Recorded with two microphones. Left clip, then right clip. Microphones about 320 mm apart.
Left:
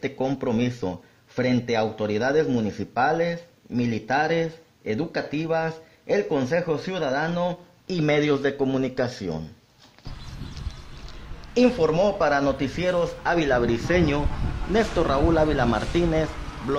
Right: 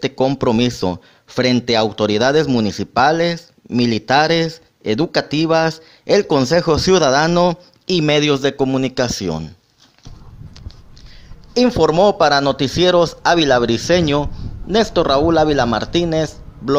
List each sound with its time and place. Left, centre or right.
0.0 s speech: centre
11.5 s a man's voice: centre